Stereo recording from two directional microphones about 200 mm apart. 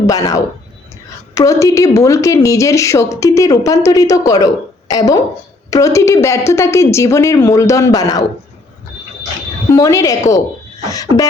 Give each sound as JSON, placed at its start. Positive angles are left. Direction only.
{"t": 0.1, "sound": "a woman's voice", "side_deg": 15}
{"t": 9.7, "sound": "a woman's voice", "side_deg": 15}